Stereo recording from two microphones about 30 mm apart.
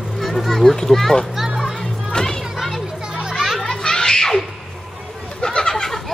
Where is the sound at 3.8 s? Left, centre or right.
Left.